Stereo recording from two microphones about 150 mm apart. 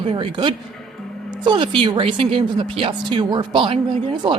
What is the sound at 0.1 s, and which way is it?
Speech, 35° right (ahead or behind).